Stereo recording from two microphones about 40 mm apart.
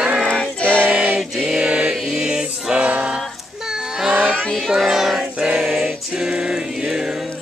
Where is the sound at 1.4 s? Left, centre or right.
Right.